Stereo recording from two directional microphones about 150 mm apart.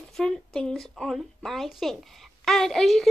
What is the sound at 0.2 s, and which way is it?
A woman's voice, 5° left (ahead or behind).